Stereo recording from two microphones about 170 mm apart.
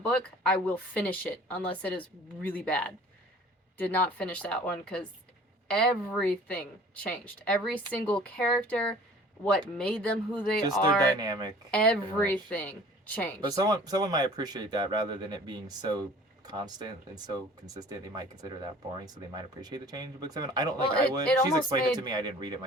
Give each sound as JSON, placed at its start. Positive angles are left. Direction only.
{"t": 0.1, "sound": "speech", "side_deg": 5}
{"t": 11.2, "sound": "speech", "side_deg": -25}
{"t": 11.7, "sound": "speech", "side_deg": 10}
{"t": 13.5, "sound": "speech", "side_deg": -20}